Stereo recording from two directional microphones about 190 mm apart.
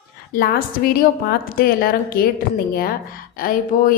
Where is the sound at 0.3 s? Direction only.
55° left (ahead or behind).